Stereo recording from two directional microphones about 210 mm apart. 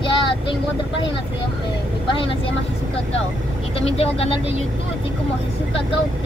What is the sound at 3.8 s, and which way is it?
Speech, 25° left (ahead or behind).